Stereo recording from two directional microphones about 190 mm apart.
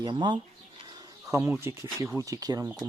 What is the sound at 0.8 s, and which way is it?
Bird, 20° right (ahead or behind).